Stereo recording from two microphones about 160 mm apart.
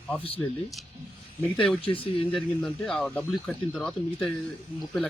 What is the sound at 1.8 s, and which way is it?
Speech, 35° left (ahead or behind).